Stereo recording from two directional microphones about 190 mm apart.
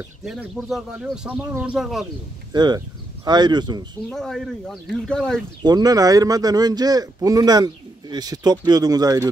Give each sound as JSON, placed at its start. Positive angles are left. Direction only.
{"t": 0.2, "sound": "speech", "side_deg": -5}
{"t": 2.5, "sound": "speech", "side_deg": -20}
{"t": 4.1, "sound": "speech", "side_deg": 0}
{"t": 5.6, "sound": "speech", "side_deg": -20}